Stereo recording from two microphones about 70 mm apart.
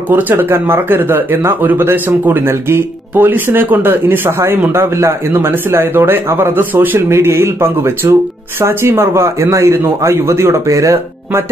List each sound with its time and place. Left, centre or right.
0.1 s speech: right
4.7 s speech: right
7.0 s speech: right